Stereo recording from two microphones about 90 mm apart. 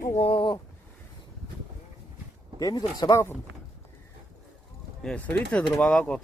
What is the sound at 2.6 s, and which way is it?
Speech, 45° left (ahead or behind).